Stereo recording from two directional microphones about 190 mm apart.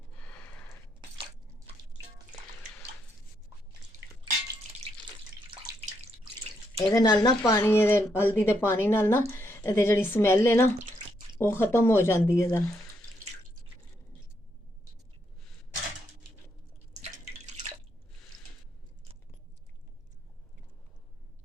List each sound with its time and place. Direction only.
0.2 s a sound: 10° left (ahead or behind)
6.7 s speech: 20° left (ahead or behind)
17.0 s drip: 35° right (ahead or behind)